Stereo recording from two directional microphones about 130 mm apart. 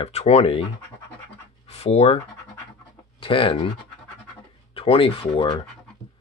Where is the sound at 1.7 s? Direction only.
50° left (ahead or behind).